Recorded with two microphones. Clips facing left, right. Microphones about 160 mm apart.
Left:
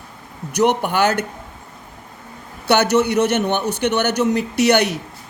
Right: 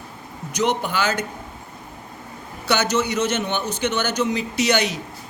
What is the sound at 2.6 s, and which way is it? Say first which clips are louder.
A man's voice: left 5 dB; 60° left (ahead or behind).